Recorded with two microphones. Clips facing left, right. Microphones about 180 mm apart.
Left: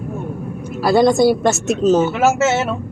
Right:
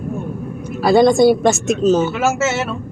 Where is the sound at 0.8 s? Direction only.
5° left (ahead or behind).